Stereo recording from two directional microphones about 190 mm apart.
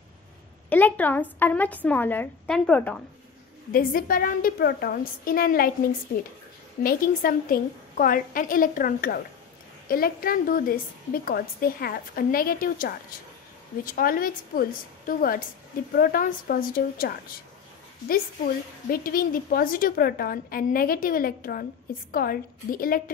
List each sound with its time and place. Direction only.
0.7 s a woman's voice: 10° left (ahead or behind)
3.7 s a woman's voice: 50° left (ahead or behind)
18.9 s a woman's voice: 50° left (ahead or behind)